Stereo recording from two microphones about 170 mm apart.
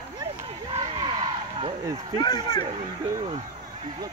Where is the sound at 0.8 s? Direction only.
25° right (ahead or behind).